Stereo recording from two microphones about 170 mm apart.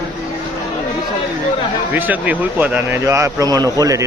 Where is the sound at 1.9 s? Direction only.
10° right (ahead or behind).